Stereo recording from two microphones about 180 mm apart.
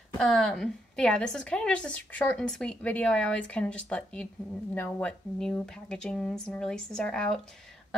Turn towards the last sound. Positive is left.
turn(degrees=0)  # may be behind; listen again after turning